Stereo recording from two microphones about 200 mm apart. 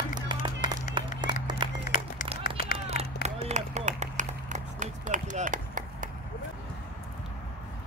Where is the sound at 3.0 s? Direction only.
35° right (ahead or behind).